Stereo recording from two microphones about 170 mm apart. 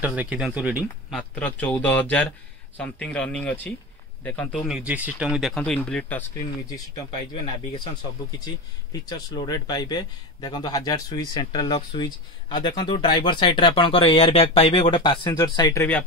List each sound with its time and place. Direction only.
0.0 s speech: 10° right (ahead or behind)
1.3 s speech: 10° left (ahead or behind)
4.6 s speech: 5° right (ahead or behind)
8.5 s speech: 25° left (ahead or behind)